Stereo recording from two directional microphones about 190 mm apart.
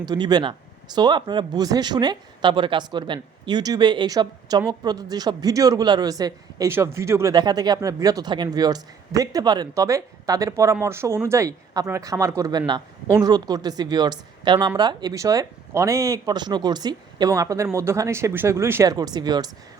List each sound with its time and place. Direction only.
0.0 s a man's voice: 20° right (ahead or behind)